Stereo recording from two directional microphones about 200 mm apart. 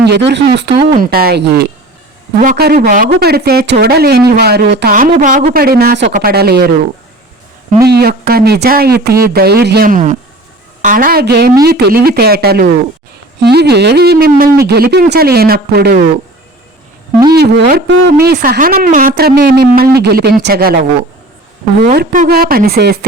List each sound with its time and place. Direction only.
0.0 s speech: 60° right (ahead or behind)
7.9 s speech: 55° right (ahead or behind)
17.3 s speech: 55° right (ahead or behind)
21.9 s speech: 45° right (ahead or behind)